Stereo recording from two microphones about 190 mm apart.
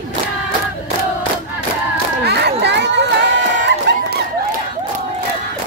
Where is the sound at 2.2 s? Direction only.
65° right (ahead or behind).